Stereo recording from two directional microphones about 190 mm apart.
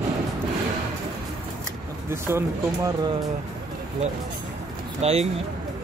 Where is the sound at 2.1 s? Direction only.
15° right (ahead or behind).